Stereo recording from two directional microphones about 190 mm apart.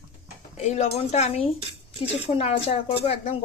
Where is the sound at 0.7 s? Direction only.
35° left (ahead or behind).